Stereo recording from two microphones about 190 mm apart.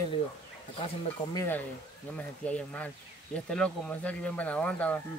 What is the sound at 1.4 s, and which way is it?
Speech, 10° left (ahead or behind).